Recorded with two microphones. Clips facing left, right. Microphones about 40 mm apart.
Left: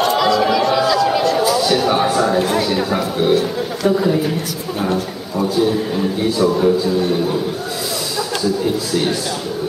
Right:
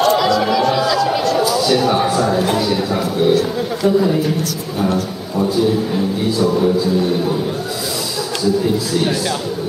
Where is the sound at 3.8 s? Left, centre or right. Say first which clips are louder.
Right 1 dB; centre.